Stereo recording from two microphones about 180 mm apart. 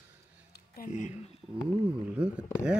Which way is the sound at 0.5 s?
50° left (ahead or behind).